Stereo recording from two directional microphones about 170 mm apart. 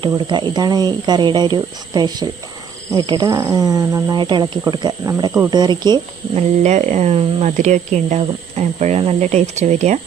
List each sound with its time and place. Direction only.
0.0 s speech: 30° right (ahead or behind)
6.3 s speech: 40° right (ahead or behind)